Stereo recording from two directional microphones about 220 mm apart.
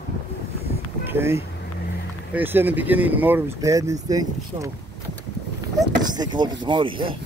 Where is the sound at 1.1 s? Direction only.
10° right (ahead or behind).